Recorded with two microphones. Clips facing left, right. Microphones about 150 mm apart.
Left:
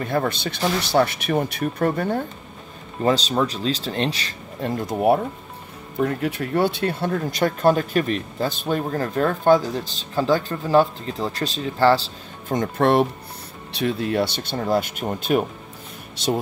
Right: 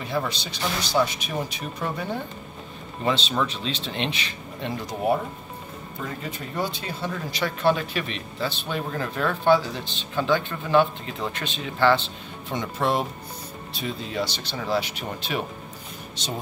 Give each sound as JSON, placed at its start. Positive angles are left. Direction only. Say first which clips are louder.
{"t": 0.0, "sound": "speech", "louder": "left 5 dB", "side_deg": 55}
{"t": 3.0, "sound": "speech", "louder": "left 5 dB", "side_deg": 40}
{"t": 5.9, "sound": "speech", "louder": "left 11 dB", "side_deg": 65}